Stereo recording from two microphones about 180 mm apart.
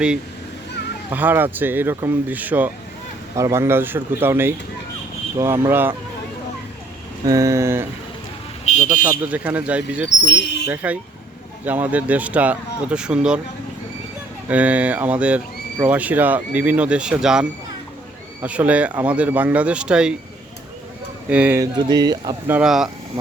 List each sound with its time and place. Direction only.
1.1 s speech: 10° right (ahead or behind)
7.3 s speech: 15° right (ahead or behind)
8.7 s a sound: 40° left (ahead or behind)
9.2 s speech: 10° right (ahead or behind)
10.3 s speech: 70° left (ahead or behind)
10.7 s speech: 10° right (ahead or behind)
14.4 s speech: 10° right (ahead or behind)
18.4 s speech: 10° right (ahead or behind)
21.2 s speech: 10° right (ahead or behind)
21.6 s speech: 20° right (ahead or behind)
22.4 s speech: 5° right (ahead or behind)